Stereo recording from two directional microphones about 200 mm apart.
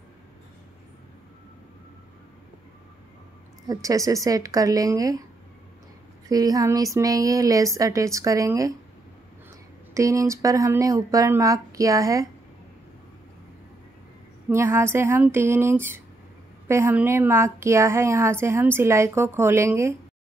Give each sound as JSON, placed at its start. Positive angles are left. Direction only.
{"t": 3.6, "sound": "a woman's voice", "side_deg": -15}
{"t": 6.2, "sound": "a woman's voice", "side_deg": -20}
{"t": 9.9, "sound": "a woman's voice", "side_deg": -15}
{"t": 14.5, "sound": "a woman's voice", "side_deg": -15}